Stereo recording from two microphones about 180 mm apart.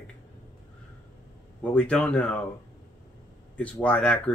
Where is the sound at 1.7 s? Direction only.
5° left (ahead or behind).